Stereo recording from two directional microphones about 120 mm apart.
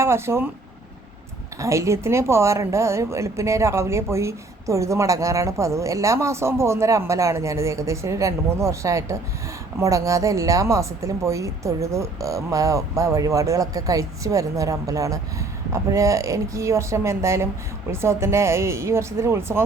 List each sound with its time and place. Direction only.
0.0 s speech: 20° right (ahead or behind)
1.5 s speech: 25° right (ahead or behind)